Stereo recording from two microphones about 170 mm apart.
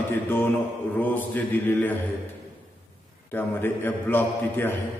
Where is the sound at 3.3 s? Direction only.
10° left (ahead or behind).